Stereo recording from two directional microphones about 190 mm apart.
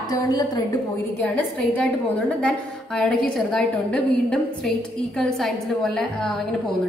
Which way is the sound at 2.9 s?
5° left (ahead or behind).